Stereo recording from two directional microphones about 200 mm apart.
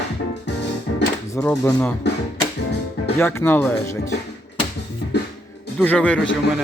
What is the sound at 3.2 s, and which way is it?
Speech, 10° left (ahead or behind).